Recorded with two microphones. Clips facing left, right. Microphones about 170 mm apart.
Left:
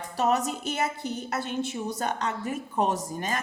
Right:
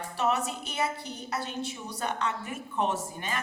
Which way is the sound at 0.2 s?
40° left (ahead or behind).